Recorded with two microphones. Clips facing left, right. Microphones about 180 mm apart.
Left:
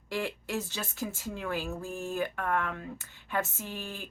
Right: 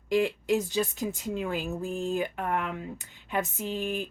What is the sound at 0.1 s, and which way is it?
Speech, 15° right (ahead or behind).